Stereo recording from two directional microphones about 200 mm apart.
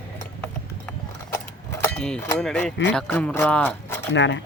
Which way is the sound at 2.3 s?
5° left (ahead or behind).